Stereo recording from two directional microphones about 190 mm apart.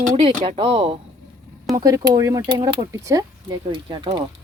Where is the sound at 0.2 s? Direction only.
25° right (ahead or behind).